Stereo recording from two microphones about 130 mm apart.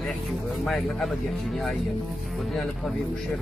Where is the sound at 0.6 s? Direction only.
Centre (ahead or behind).